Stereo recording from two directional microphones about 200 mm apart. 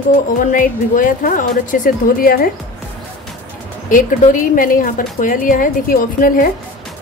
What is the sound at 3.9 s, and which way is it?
Speech, 40° left (ahead or behind).